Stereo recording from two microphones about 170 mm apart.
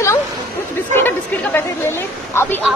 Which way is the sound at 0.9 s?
15° left (ahead or behind).